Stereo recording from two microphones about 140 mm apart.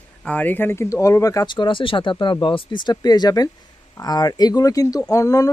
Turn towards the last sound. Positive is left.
turn(degrees=25)  # may be behind; listen again after turning